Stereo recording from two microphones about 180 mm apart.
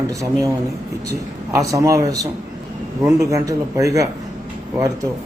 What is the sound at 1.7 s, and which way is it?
A man's voice, 20° right (ahead or behind).